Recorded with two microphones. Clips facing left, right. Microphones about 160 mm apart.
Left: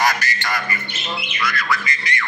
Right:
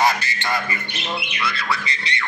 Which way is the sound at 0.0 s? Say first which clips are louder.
Right 1 dB; 25° right (ahead or behind).